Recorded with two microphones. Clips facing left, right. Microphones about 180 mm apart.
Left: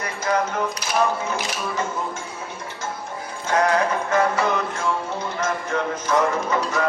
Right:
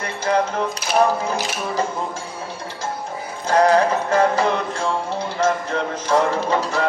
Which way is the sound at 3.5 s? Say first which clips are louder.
Right 4 dB; 35° right (ahead or behind).